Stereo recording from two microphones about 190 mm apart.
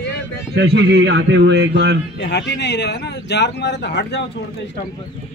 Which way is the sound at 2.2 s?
65° left (ahead or behind).